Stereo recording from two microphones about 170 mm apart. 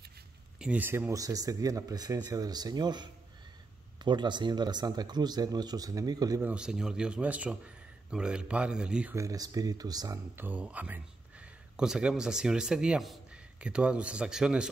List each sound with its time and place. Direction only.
0.6 s speech: 10° right (ahead or behind)
6.5 s speech: 5° right (ahead or behind)
9.1 s speech: 20° right (ahead or behind)